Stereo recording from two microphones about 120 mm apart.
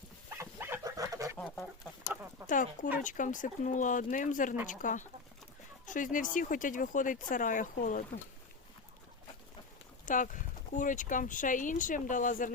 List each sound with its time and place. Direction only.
0.3 s chicken: 20° right (ahead or behind)
1.4 s chicken: centre (ahead or behind)
2.5 s speech: 90° left
10.1 s speech: 90° left